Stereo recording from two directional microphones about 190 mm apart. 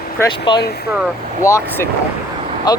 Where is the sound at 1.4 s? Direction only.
15° left (ahead or behind).